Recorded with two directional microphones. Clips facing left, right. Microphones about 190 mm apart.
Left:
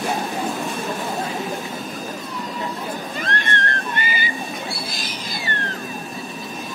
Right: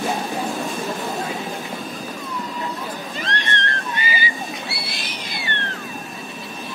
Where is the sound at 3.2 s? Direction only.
50° left (ahead or behind).